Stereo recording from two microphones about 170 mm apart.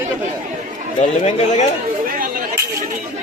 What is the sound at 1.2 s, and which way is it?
Speech, 45° left (ahead or behind).